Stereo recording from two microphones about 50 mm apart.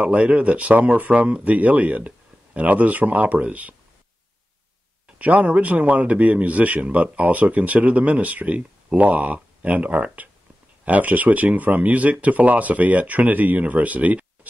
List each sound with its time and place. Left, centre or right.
0.0 s a man's voice: right
5.2 s a man's voice: right